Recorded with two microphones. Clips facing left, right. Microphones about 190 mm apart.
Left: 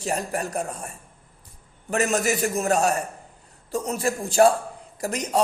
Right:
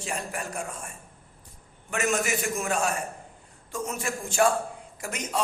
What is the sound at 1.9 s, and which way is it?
A man's voice, 35° left (ahead or behind).